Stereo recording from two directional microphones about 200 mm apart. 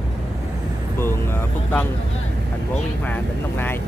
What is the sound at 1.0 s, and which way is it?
Speech, 10° left (ahead or behind).